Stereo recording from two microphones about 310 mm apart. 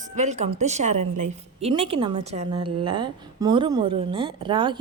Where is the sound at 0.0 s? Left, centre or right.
Right.